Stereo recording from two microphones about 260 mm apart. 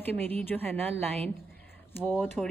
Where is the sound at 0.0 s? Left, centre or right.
Centre.